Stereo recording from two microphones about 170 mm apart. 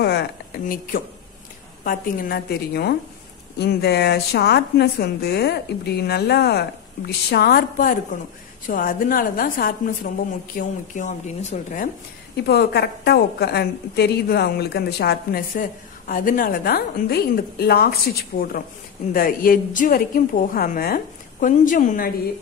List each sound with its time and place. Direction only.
0.0 s a woman's voice: 75° left (ahead or behind); by 10.7 s 55° left (ahead or behind)
11.0 s speech: 45° left (ahead or behind)
12.4 s a woman's voice: 70° left (ahead or behind)
16.1 s a woman's voice: 55° left (ahead or behind)
18.3 s a woman's voice: 50° left (ahead or behind)